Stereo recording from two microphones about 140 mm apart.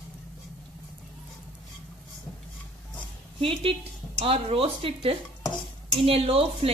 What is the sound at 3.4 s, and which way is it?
A woman's voice, 40° right (ahead or behind).